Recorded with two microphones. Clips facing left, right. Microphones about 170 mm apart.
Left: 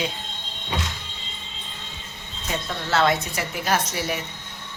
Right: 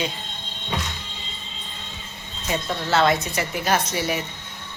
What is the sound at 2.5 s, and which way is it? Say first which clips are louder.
A woman's voice: right 3 dB; 5° right (ahead or behind).